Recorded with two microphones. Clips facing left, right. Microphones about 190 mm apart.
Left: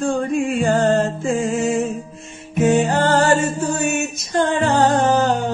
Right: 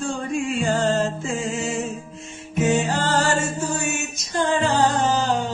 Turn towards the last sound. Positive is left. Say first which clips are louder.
# left 4 dB
turn(degrees=55)  # may be behind; listen again after turning